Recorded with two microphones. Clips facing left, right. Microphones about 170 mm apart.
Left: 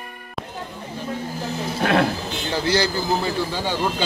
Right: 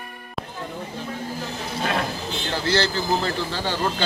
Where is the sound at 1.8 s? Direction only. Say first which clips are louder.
Left 6 dB; 60° left (ahead or behind).